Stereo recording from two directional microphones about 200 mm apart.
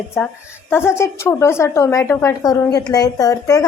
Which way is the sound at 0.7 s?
10° left (ahead or behind).